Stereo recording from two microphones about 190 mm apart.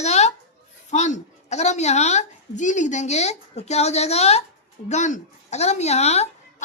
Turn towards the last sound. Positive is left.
turn(degrees=35)  # may be behind; listen again after turning